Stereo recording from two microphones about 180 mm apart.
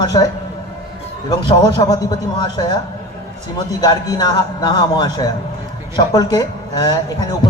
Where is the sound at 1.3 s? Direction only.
25° left (ahead or behind).